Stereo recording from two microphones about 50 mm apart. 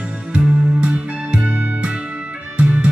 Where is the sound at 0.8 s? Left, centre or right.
Right.